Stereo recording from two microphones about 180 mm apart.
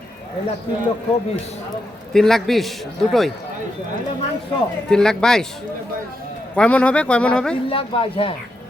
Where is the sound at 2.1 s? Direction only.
Centre (ahead or behind).